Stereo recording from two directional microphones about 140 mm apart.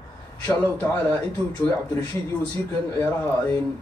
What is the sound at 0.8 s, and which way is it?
Speech, 10° left (ahead or behind).